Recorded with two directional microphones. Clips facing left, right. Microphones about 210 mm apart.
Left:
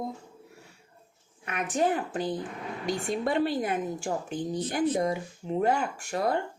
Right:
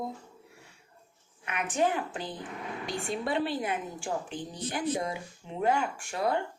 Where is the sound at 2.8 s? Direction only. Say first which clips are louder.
Left 5 dB; 45° left (ahead or behind).